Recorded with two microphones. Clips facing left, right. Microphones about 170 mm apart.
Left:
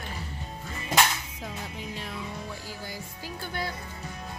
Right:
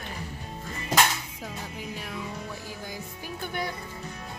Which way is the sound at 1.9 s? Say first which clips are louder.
Even; 10° right (ahead or behind).